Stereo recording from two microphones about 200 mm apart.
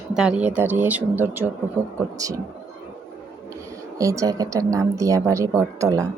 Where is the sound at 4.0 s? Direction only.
15° right (ahead or behind).